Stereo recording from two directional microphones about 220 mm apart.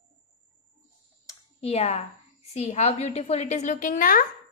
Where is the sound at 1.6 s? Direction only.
30° left (ahead or behind).